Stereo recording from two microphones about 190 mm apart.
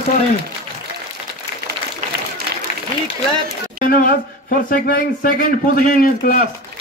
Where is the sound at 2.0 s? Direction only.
40° right (ahead or behind).